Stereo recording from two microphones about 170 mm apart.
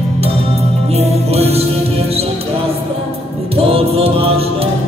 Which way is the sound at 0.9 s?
35° right (ahead or behind).